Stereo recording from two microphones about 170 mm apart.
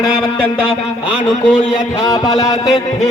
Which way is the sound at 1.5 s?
5° right (ahead or behind).